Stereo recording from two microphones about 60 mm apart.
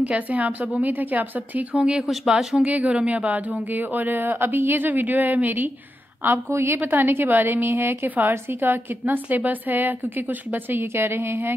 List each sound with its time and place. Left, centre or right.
0.0 s a woman's voice: right
1.8 s speech: centre
2.6 s a woman's voice: right
6.5 s a woman's voice: right
6.8 s a woman's voice: right